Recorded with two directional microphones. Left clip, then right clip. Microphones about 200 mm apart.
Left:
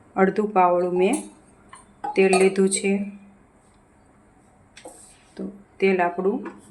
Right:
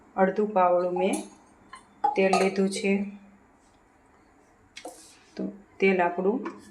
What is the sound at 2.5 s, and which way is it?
Speech, 30° left (ahead or behind).